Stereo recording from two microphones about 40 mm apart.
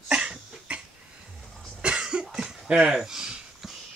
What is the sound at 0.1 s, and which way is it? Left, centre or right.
Cough, right.